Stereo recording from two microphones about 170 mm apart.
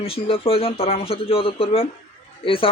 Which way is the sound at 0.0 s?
35° left (ahead or behind).